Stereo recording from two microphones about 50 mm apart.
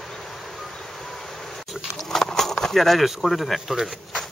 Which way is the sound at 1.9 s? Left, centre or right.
Centre.